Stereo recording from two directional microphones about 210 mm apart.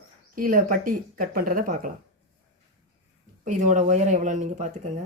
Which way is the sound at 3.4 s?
35° right (ahead or behind).